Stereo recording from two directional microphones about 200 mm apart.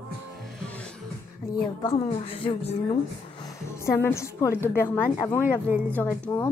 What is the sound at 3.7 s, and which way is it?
A woman's voice, 10° left (ahead or behind).